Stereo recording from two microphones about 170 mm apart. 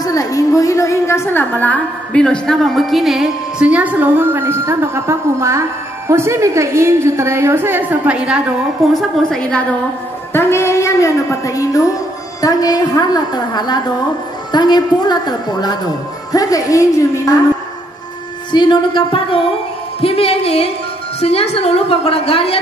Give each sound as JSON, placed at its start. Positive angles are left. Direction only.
{"t": 0.0, "sound": "a woman's voice", "side_deg": 20}
{"t": 8.9, "sound": "a woman's voice", "side_deg": 5}
{"t": 18.5, "sound": "a woman's voice", "side_deg": 25}